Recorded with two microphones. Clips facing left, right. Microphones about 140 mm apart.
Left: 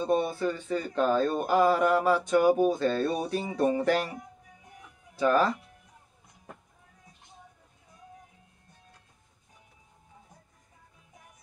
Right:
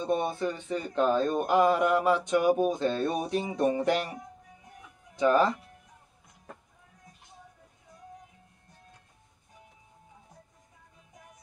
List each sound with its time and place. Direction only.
0.0 s speech: 20° right (ahead or behind)